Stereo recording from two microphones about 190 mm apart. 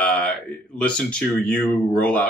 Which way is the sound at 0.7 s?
5° left (ahead or behind).